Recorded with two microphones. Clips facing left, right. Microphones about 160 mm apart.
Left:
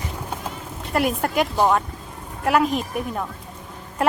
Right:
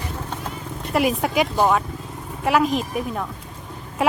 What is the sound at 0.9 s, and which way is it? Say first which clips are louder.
A woman's voice: right 1 dB; centre (ahead or behind).